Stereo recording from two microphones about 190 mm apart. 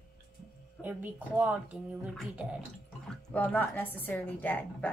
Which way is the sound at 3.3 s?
10° left (ahead or behind).